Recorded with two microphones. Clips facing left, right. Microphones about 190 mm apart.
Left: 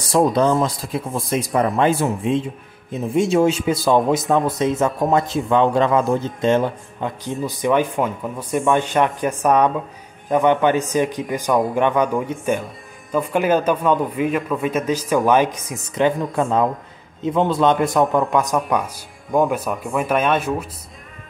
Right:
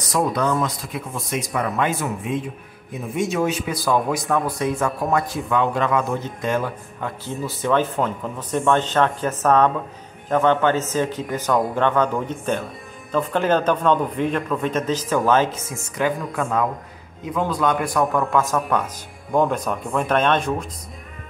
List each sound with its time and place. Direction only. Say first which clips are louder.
0.0 s speech: left 5 dB; 30° left (ahead or behind); by 20.6 s 5° left (ahead or behind)